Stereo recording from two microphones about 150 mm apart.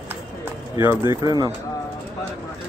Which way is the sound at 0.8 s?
15° right (ahead or behind).